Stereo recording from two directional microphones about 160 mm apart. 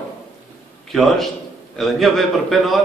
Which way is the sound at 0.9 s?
Centre (ahead or behind).